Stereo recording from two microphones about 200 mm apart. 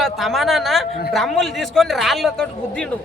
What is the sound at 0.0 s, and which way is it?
A man's voice, centre (ahead or behind).